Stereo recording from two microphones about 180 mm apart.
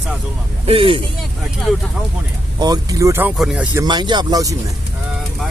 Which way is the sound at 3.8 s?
25° right (ahead or behind).